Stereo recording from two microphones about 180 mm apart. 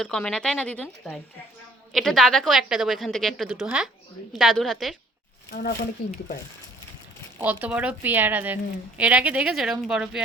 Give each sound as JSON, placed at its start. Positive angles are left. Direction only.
{"t": 0.0, "sound": "a woman's voice", "side_deg": 5}
{"t": 5.5, "sound": "speech", "side_deg": 60}
{"t": 6.1, "sound": "speech", "side_deg": 50}
{"t": 7.3, "sound": "a woman's voice", "side_deg": -10}